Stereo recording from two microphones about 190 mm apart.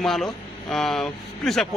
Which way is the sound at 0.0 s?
Centre (ahead or behind).